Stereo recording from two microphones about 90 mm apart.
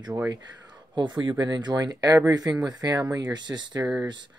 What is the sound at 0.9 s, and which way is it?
Speech, 60° right (ahead or behind).